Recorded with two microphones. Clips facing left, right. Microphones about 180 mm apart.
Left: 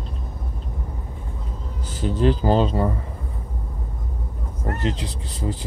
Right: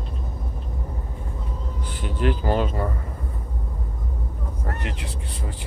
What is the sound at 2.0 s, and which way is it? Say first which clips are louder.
Speech: left 5 dB; 35° left (ahead or behind).